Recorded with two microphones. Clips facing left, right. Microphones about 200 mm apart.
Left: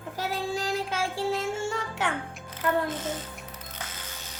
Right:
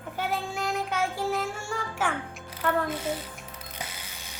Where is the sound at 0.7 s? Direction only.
30° left (ahead or behind).